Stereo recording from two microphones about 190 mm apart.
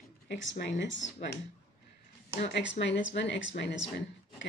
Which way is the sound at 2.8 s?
65° left (ahead or behind).